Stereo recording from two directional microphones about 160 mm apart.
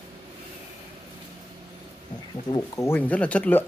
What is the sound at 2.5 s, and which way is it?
Speech, 20° left (ahead or behind).